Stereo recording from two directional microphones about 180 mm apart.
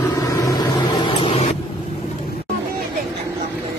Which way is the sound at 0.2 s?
20° left (ahead or behind).